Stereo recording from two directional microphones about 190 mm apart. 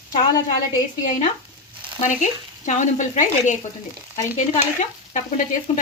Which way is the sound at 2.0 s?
40° left (ahead or behind).